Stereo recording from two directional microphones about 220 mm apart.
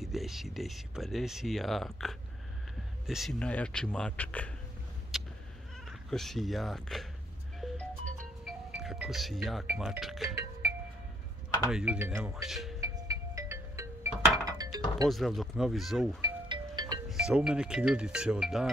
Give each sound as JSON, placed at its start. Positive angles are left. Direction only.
{"t": 0.0, "sound": "speech", "side_deg": 0}
{"t": 5.1, "sound": "cat", "side_deg": 0}
{"t": 5.9, "sound": "speech", "side_deg": 0}
{"t": 8.5, "sound": "music", "side_deg": -5}
{"t": 9.7, "sound": "speech", "side_deg": 0}
{"t": 10.3, "sound": "music", "side_deg": -10}
{"t": 11.6, "sound": "speech", "side_deg": -5}
{"t": 12.4, "sound": "speech", "side_deg": 0}
{"t": 12.8, "sound": "music", "side_deg": -15}
{"t": 15.0, "sound": "speech", "side_deg": 0}
{"t": 16.2, "sound": "music", "side_deg": -20}
{"t": 17.1, "sound": "speech", "side_deg": -5}